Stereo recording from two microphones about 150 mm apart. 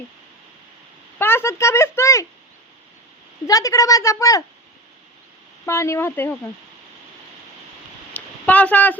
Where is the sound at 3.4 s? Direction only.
20° left (ahead or behind).